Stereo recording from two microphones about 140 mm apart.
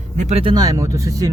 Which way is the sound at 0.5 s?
25° right (ahead or behind).